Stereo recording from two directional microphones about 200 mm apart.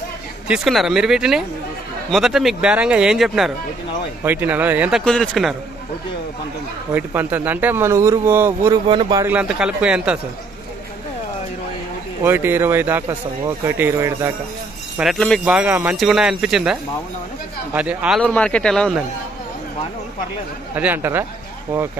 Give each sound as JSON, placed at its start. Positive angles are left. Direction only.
{"t": 0.5, "sound": "a man's voice", "side_deg": 0}
{"t": 5.0, "sound": "speech", "side_deg": 5}
{"t": 6.9, "sound": "a man's voice", "side_deg": -10}
{"t": 8.8, "sound": "a man's voice", "side_deg": -25}
{"t": 9.2, "sound": "speech", "side_deg": -5}
{"t": 12.2, "sound": "a man's voice", "side_deg": -10}
{"t": 15.0, "sound": "speech", "side_deg": 0}
{"t": 17.7, "sound": "speech", "side_deg": -5}
{"t": 18.2, "sound": "speech", "side_deg": 5}
{"t": 20.7, "sound": "a man's voice", "side_deg": -10}